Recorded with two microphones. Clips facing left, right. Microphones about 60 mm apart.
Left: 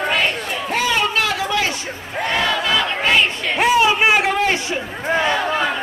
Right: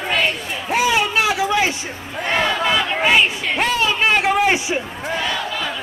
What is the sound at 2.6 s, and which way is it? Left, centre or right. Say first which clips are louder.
Crowd: right 1 dB; centre.